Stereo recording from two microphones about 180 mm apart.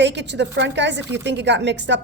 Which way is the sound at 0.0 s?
75° right (ahead or behind).